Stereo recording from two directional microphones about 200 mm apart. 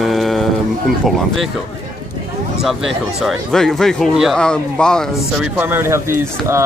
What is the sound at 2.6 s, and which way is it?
Speech, centre (ahead or behind).